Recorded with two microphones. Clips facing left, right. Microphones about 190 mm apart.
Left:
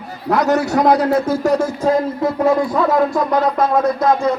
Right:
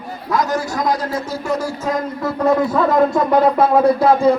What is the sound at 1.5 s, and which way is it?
Music, 25° left (ahead or behind).